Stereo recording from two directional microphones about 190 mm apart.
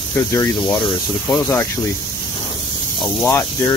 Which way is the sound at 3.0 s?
15° left (ahead or behind).